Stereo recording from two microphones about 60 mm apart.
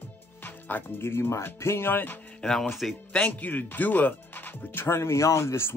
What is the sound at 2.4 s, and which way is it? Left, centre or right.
Speech, centre.